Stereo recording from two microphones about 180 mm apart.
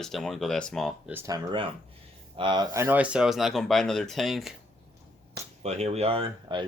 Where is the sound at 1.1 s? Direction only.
15° right (ahead or behind); by 4.5 s centre (ahead or behind).